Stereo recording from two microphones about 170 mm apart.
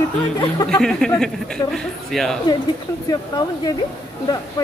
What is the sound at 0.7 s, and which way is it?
Speech, 5° left (ahead or behind).